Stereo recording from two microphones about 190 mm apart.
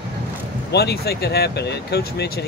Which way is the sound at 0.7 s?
55° left (ahead or behind).